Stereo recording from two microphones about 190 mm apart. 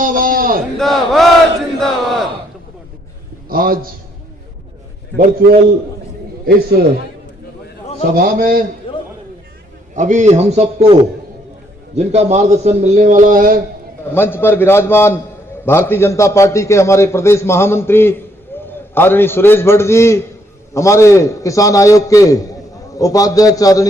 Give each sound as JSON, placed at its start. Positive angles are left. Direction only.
{"t": 0.0, "sound": "a sound", "side_deg": -45}
{"t": 0.8, "sound": "speech", "side_deg": 0}
{"t": 1.8, "sound": "a sound", "side_deg": 0}
{"t": 3.5, "sound": "a man's voice", "side_deg": -50}
{"t": 5.1, "sound": "a man's voice", "side_deg": -55}
{"t": 8.2, "sound": "a man's voice", "side_deg": -50}
{"t": 8.9, "sound": "a sound", "side_deg": 25}
{"t": 9.9, "sound": "a man's voice", "side_deg": -40}
{"t": 11.9, "sound": "a man's voice", "side_deg": -35}
{"t": 14.1, "sound": "a man's voice", "side_deg": 10}